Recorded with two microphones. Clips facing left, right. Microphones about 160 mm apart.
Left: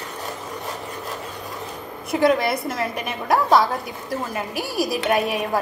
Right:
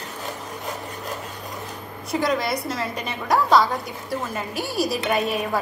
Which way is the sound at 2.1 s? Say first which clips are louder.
Left 4 dB; 55° left (ahead or behind).